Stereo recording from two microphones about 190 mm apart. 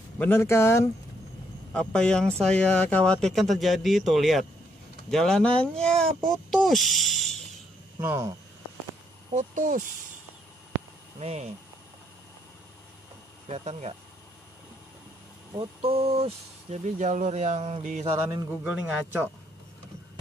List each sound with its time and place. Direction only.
0.2 s speech: 10° left (ahead or behind)
8.0 s a man's voice: 10° right (ahead or behind)
9.3 s speech: 40° right (ahead or behind)
11.1 s speech: 35° right (ahead or behind)
13.5 s speech: 35° right (ahead or behind)
15.5 s speech: 30° right (ahead or behind)
18.6 s a man's voice: 10° right (ahead or behind)